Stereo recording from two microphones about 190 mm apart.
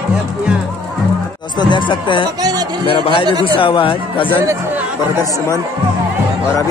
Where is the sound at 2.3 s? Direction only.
20° right (ahead or behind).